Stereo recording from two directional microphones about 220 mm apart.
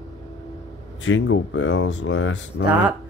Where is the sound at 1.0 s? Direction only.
60° left (ahead or behind).